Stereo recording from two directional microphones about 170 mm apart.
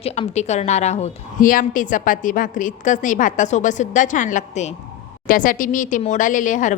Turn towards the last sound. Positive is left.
turn(degrees=50)  # may be behind; listen again after turning